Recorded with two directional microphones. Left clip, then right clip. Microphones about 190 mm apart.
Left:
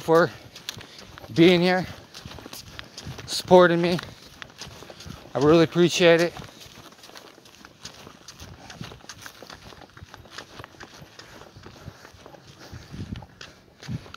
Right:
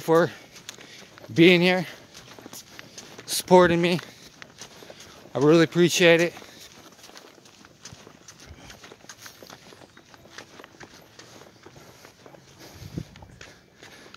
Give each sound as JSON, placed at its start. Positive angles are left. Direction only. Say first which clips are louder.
{"t": 0.0, "sound": "speech", "louder": "left 1 dB", "side_deg": -15}
{"t": 1.4, "sound": "speech", "louder": "right 1 dB", "side_deg": -15}
{"t": 2.2, "sound": "walk", "louder": "left 3 dB", "side_deg": 45}
{"t": 3.3, "sound": "speech", "louder": "left 1 dB", "side_deg": -15}
{"t": 4.0, "sound": "a sound", "louder": "left 3 dB", "side_deg": 50}
{"t": 5.3, "sound": "speech", "louder": "even", "side_deg": -10}
{"t": 8.8, "sound": "a sound", "louder": "left 4 dB", "side_deg": 45}